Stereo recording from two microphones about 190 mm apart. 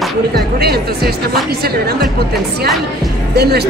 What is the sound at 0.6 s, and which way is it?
Speech, 55° right (ahead or behind).